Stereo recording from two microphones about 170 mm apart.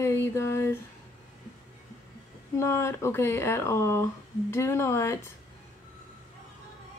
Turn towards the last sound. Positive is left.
turn(degrees=15)  # may be behind; listen again after turning